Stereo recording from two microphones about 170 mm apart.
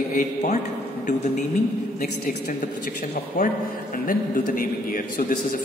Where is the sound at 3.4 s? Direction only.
55° left (ahead or behind).